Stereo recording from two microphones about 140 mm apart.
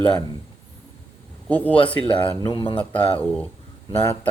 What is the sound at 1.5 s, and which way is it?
Speech, 10° left (ahead or behind).